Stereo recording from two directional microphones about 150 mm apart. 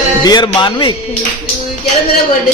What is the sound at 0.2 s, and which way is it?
Speech, 25° left (ahead or behind).